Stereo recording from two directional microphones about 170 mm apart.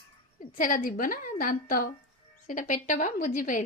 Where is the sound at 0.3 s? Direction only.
55° left (ahead or behind).